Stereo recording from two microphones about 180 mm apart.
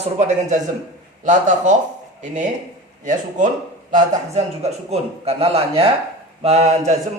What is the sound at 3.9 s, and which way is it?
A man's voice, 40° right (ahead or behind).